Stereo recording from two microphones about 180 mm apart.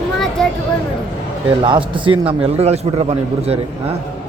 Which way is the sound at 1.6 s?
25° right (ahead or behind).